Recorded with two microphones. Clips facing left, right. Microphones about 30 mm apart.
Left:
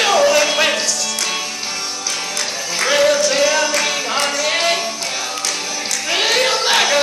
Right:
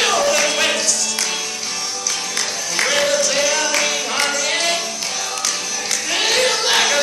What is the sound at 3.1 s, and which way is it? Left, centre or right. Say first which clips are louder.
Singing: left 3 dB; centre.